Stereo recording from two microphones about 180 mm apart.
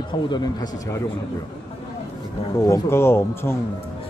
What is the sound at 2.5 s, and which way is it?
Speech, 15° left (ahead or behind).